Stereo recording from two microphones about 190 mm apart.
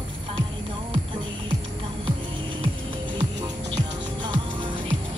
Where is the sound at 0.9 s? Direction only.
25° right (ahead or behind).